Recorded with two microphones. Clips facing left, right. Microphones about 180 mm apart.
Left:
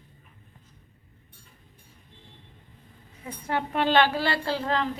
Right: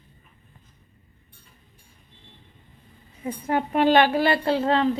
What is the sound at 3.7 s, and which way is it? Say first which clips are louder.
A woman's voice: right 4 dB; 15° right (ahead or behind).